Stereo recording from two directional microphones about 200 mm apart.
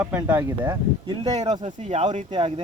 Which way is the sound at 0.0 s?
10° right (ahead or behind).